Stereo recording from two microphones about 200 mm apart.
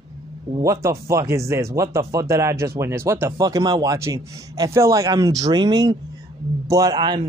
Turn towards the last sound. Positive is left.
turn(degrees=-20)  # may be behind; listen again after turning